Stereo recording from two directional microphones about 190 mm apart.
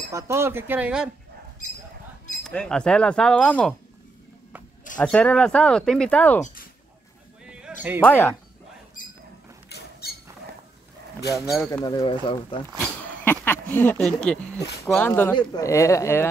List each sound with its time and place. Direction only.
0.1 s speech: 15° right (ahead or behind)
2.4 s speech: 5° left (ahead or behind)
4.9 s speech: 5° left (ahead or behind)
6.4 s a sound: 45° left (ahead or behind)
7.4 s a sound: 5° right (ahead or behind)
8.0 s speech: 10° left (ahead or behind)
9.0 s a sound: 45° left (ahead or behind)
9.7 s rodents: 55° left (ahead or behind)
11.3 s speech: centre (ahead or behind)
11.8 s speech: 25° left (ahead or behind)
12.7 s speech: 10° left (ahead or behind)